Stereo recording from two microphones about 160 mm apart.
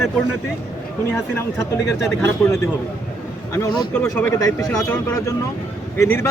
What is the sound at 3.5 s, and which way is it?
A man's voice, 20° left (ahead or behind).